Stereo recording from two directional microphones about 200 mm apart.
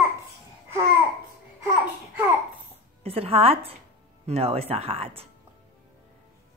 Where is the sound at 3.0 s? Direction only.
30° right (ahead or behind).